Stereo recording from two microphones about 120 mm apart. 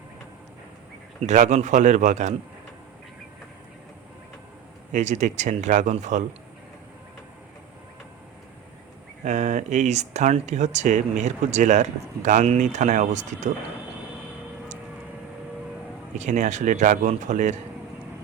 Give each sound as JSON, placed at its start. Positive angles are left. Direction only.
{"t": 1.2, "sound": "speech", "side_deg": -80}
{"t": 4.9, "sound": "speech", "side_deg": -85}
{"t": 9.2, "sound": "speech", "side_deg": -80}
{"t": 16.1, "sound": "speech", "side_deg": -85}